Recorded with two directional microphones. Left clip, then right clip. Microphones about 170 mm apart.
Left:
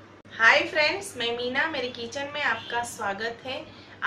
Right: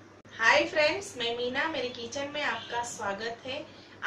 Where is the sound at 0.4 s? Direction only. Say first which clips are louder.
Left 4 dB; 5° left (ahead or behind).